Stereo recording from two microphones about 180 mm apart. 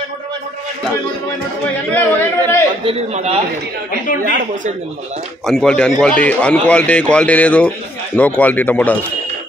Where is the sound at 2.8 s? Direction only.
35° right (ahead or behind).